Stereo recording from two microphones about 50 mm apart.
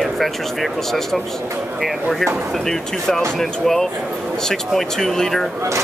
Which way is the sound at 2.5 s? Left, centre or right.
Centre.